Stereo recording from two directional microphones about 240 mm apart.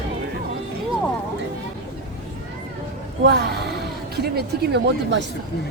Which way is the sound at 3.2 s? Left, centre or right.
Right.